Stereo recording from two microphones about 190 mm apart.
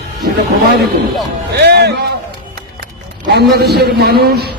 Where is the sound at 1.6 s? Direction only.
60° right (ahead or behind).